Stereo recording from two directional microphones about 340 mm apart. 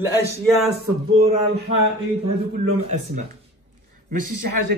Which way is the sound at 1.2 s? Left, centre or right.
Centre.